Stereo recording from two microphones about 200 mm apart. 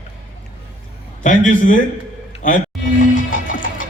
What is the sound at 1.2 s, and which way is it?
A man's voice, 40° left (ahead or behind).